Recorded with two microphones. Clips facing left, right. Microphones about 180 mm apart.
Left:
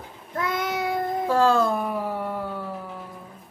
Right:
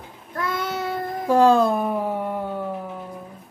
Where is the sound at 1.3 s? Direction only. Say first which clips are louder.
Right 5 dB; 15° right (ahead or behind).